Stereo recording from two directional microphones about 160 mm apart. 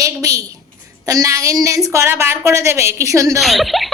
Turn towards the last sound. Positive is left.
turn(degrees=0)  # may be behind; listen again after turning